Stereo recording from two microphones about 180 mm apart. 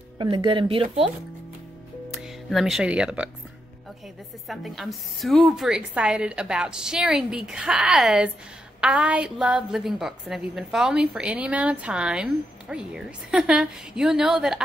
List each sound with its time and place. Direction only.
0.2 s speech: 25° right (ahead or behind)
2.2 s speech: centre (ahead or behind)
4.5 s a woman's voice: centre (ahead or behind)